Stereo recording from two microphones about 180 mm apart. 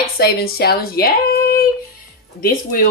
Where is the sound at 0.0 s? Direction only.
60° left (ahead or behind).